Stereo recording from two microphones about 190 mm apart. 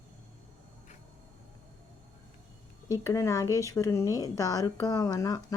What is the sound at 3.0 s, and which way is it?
Speech, 15° left (ahead or behind).